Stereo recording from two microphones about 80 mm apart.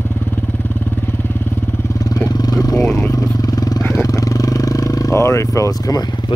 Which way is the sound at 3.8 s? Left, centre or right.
Left.